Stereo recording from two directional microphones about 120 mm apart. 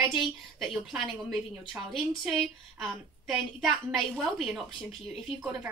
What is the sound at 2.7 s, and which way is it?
A woman's voice, centre (ahead or behind).